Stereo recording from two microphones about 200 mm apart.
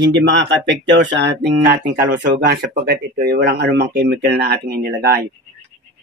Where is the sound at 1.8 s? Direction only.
60° right (ahead or behind).